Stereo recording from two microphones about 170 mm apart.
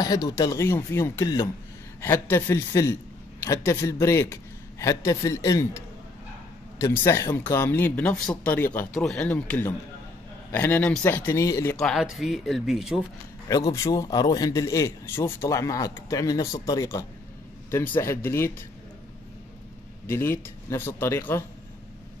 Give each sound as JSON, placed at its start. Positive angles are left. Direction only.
{"t": 0.0, "sound": "a man's voice", "side_deg": 20}
{"t": 11.7, "sound": "speech", "side_deg": 0}
{"t": 13.5, "sound": "a man's voice", "side_deg": 20}
{"t": 20.1, "sound": "speech", "side_deg": 15}